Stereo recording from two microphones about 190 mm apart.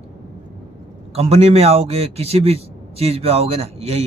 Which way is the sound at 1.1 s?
35° right (ahead or behind).